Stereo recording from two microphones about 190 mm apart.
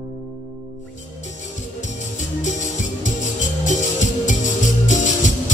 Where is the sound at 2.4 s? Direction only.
40° left (ahead or behind).